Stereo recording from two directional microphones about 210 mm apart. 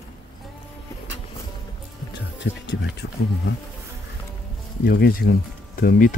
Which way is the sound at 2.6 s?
55° left (ahead or behind).